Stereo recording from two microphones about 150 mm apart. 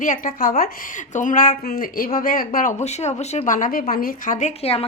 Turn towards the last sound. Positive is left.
turn(degrees=40)  # may be behind; listen again after turning